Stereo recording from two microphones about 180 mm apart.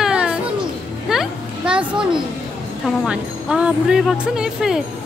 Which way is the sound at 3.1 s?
5° right (ahead or behind).